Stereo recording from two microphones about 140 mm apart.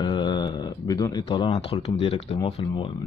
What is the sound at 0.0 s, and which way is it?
Speech, 30° left (ahead or behind).